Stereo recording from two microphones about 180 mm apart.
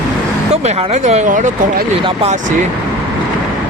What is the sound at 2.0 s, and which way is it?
Speech, 35° right (ahead or behind).